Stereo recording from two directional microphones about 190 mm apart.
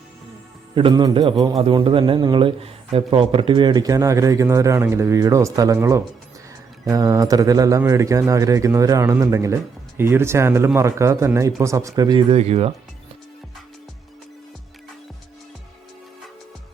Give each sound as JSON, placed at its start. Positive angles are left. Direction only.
{"t": 0.8, "sound": "speech", "side_deg": -25}